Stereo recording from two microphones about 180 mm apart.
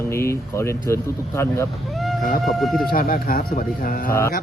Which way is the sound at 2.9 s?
50° left (ahead or behind).